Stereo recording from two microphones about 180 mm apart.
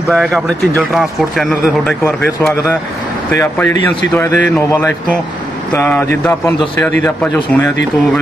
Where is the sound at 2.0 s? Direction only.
15° left (ahead or behind).